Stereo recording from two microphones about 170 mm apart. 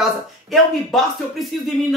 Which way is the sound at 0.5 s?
Centre (ahead or behind).